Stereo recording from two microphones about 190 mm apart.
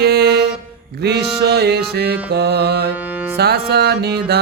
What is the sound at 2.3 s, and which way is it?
Mantra, 60° right (ahead or behind).